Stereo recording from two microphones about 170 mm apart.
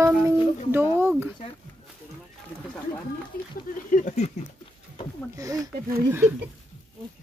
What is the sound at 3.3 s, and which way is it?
Speech, 60° left (ahead or behind).